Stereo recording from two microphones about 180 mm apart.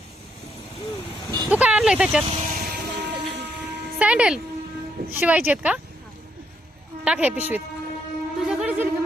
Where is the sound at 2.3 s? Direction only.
40° right (ahead or behind).